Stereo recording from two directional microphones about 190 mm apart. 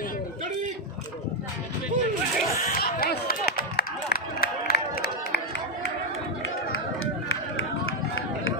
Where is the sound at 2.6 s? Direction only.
50° left (ahead or behind).